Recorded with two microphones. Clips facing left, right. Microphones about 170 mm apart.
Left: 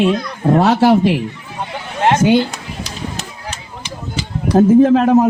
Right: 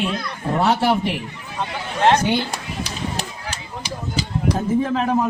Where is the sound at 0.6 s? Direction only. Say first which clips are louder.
Left 5 dB; 90° left.